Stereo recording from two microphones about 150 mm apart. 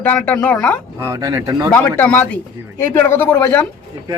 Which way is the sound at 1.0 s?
20° right (ahead or behind).